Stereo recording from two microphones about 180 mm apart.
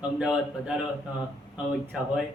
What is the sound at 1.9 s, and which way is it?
Speech, 5° right (ahead or behind).